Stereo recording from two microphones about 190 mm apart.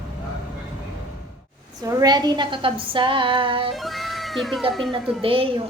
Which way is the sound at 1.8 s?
20° right (ahead or behind).